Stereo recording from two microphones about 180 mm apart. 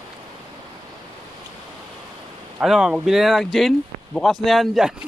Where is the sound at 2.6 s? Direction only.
Centre (ahead or behind).